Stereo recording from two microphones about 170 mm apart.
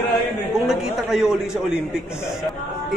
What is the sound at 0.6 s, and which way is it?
A man's voice, centre (ahead or behind).